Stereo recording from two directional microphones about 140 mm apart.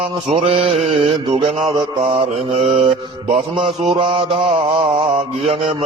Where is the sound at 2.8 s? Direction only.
40° right (ahead or behind).